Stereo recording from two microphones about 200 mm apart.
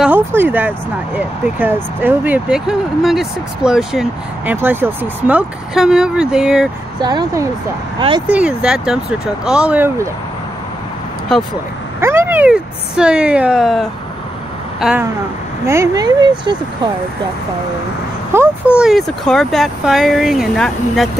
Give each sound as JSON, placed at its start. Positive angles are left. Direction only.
{"t": 0.0, "sound": "speech", "side_deg": -10}
{"t": 7.0, "sound": "speech", "side_deg": -20}
{"t": 8.3, "sound": "speech", "side_deg": -5}
{"t": 12.0, "sound": "speech", "side_deg": -10}
{"t": 18.3, "sound": "speech", "side_deg": -10}
{"t": 18.8, "sound": "speech", "side_deg": 0}